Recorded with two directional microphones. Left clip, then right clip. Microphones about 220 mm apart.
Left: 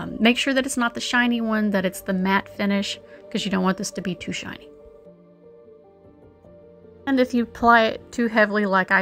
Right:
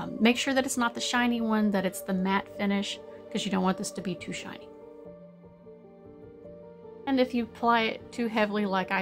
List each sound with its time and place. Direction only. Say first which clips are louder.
0.0 s a woman's voice: left 6 dB; 15° left (ahead or behind)
7.1 s a woman's voice: left 6 dB; 15° left (ahead or behind)